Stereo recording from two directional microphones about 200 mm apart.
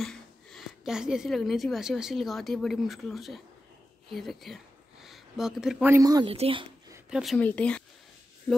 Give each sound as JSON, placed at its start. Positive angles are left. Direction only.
{"t": 0.0, "sound": "a woman's voice", "side_deg": 0}
{"t": 7.1, "sound": "speech", "side_deg": -5}
{"t": 7.3, "sound": "speech", "side_deg": 5}